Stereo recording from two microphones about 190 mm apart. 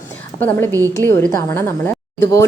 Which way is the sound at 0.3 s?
10° left (ahead or behind).